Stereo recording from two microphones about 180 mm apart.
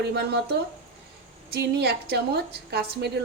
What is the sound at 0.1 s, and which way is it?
A woman's voice, 70° right (ahead or behind).